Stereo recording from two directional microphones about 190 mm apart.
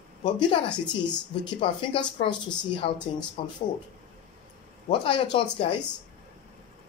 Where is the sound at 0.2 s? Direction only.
25° left (ahead or behind).